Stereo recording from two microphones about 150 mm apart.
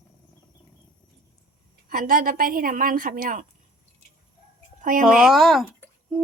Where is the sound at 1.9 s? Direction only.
65° right (ahead or behind).